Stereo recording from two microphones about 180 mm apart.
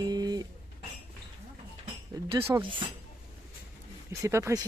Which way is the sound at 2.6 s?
30° right (ahead or behind).